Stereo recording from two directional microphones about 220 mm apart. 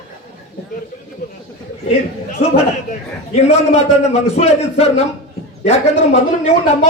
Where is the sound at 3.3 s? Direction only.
30° left (ahead or behind).